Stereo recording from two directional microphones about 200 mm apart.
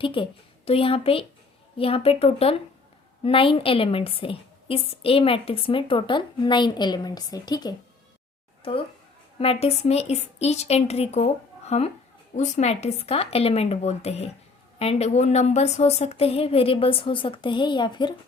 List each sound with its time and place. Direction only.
0.0 s a woman's voice: 25° left (ahead or behind)